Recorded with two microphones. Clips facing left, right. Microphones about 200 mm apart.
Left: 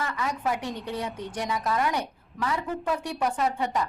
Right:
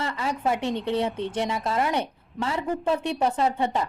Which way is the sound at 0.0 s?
30° right (ahead or behind).